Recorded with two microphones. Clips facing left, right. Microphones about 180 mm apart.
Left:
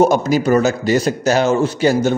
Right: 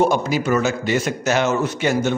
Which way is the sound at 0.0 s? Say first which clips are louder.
Left 5 dB; 40° left (ahead or behind).